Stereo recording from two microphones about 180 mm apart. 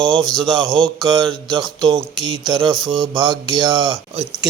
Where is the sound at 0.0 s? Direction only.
Centre (ahead or behind).